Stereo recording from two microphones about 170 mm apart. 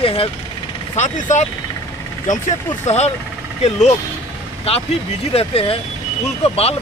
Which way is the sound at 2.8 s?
40° left (ahead or behind).